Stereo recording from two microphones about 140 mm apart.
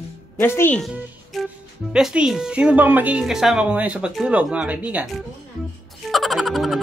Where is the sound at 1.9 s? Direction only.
5° right (ahead or behind).